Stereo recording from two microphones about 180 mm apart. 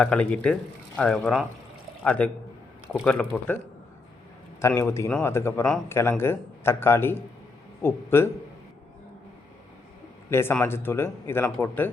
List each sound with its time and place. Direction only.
0.0 s speech: 5° left (ahead or behind)
4.6 s speech: 15° left (ahead or behind)
10.2 s speech: 15° left (ahead or behind)